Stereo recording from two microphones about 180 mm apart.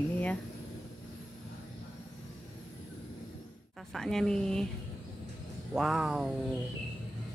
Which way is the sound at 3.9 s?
Centre (ahead or behind).